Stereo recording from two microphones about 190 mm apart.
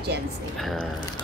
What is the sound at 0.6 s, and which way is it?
Speech, centre (ahead or behind).